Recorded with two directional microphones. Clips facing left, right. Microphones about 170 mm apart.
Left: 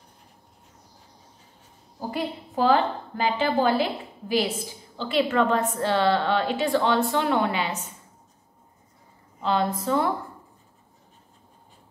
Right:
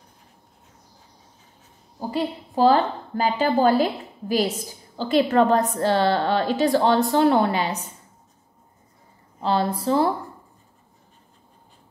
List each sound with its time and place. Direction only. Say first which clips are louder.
2.0 s a woman's voice: right 3 dB; 30° right (ahead or behind)
9.4 s a woman's voice: right 2 dB; 35° right (ahead or behind)